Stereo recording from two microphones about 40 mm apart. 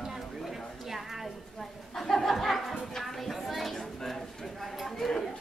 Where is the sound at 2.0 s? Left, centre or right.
Centre.